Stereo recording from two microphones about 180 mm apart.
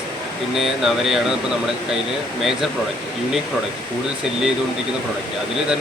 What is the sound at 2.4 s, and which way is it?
Speech, centre (ahead or behind).